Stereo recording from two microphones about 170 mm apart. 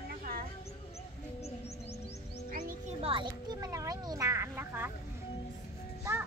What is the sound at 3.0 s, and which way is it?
Music, 30° right (ahead or behind).